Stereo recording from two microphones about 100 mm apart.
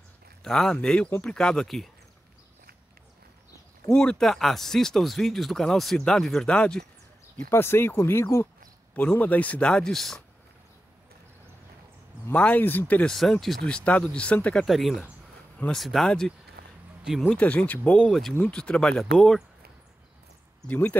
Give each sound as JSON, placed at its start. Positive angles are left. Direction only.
{"t": 0.4, "sound": "speech", "side_deg": 5}
{"t": 3.9, "sound": "speech", "side_deg": 10}
{"t": 7.5, "sound": "speech", "side_deg": 25}
{"t": 12.3, "sound": "speech", "side_deg": 15}
{"t": 13.1, "sound": "speech", "side_deg": 0}
{"t": 14.7, "sound": "speech", "side_deg": 0}
{"t": 17.3, "sound": "speech", "side_deg": 15}
{"t": 20.6, "sound": "speech", "side_deg": 15}